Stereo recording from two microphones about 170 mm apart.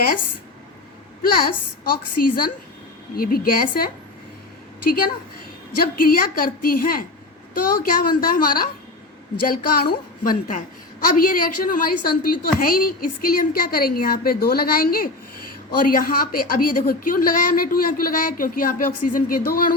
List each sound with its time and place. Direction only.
1.2 s a woman's voice: 60° left (ahead or behind)
6.0 s a woman's voice: 55° left (ahead or behind)